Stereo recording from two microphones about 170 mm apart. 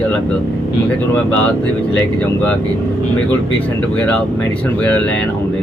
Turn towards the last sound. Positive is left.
turn(degrees=5)  # may be behind; listen again after turning